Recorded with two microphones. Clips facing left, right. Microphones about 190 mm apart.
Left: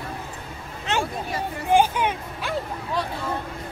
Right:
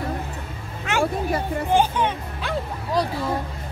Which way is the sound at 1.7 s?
10° left (ahead or behind).